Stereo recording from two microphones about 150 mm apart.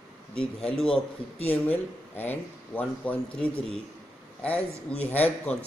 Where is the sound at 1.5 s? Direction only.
10° left (ahead or behind).